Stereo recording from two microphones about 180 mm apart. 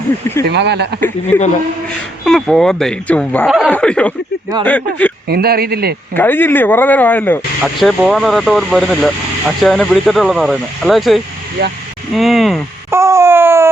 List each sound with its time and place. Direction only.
0.4 s speech: 70° right (ahead or behind)
2.2 s speech: centre (ahead or behind)
5.3 s speech: 60° right (ahead or behind)
6.1 s speech: 10° left (ahead or behind)
12.9 s a sound: 15° right (ahead or behind)